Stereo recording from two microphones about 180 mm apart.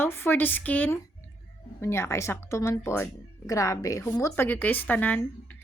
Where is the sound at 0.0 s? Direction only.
10° left (ahead or behind).